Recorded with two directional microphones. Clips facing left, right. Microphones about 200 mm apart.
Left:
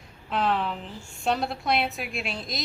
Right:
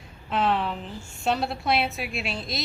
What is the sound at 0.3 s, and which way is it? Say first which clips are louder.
A woman's voice: right 1 dB; centre (ahead or behind).